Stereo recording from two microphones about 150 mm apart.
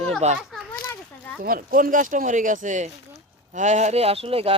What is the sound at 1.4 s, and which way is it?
Speech, 70° right (ahead or behind).